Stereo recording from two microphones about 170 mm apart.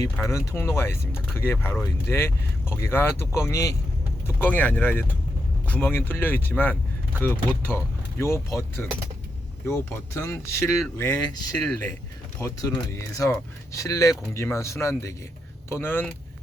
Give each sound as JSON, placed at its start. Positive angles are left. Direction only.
{"t": 0.0, "sound": "speech", "side_deg": 15}
{"t": 10.2, "sound": "speech", "side_deg": 15}
{"t": 11.5, "sound": "speech", "side_deg": 5}